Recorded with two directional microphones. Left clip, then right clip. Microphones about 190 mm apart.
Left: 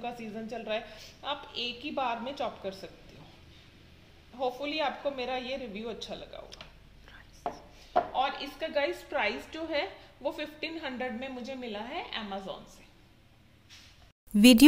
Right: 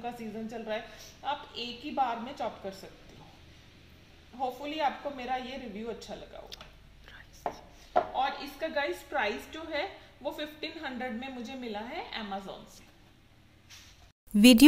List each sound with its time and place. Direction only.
0.0 s a woman's voice: 35° left (ahead or behind)
4.7 s a woman's voice: 40° left (ahead or behind)
7.1 s chopping: centre (ahead or behind)
8.1 s a woman's voice: 35° left (ahead or behind)
14.3 s speech: centre (ahead or behind)